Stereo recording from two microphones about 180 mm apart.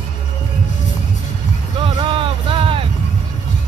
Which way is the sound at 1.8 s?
30° right (ahead or behind).